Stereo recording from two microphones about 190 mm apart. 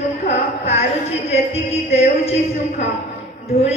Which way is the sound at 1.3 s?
30° left (ahead or behind).